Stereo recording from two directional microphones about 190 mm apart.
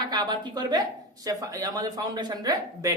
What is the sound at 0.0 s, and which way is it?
A woman's voice, 20° right (ahead or behind).